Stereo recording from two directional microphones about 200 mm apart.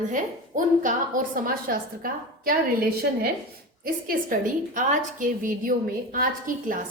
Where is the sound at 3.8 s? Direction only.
45° right (ahead or behind).